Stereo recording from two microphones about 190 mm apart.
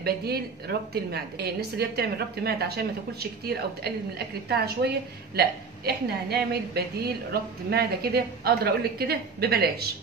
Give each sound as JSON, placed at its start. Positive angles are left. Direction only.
{"t": 0.0, "sound": "a woman's voice", "side_deg": -55}